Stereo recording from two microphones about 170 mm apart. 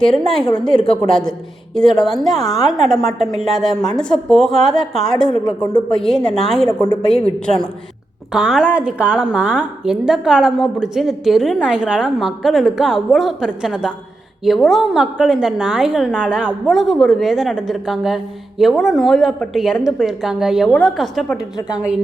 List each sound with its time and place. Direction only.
0.0 s a woman's voice: centre (ahead or behind)
5.6 s a woman's voice: 25° left (ahead or behind)
6.0 s a woman's voice: 5° left (ahead or behind)